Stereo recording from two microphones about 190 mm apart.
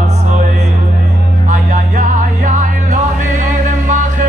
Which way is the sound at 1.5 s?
40° right (ahead or behind).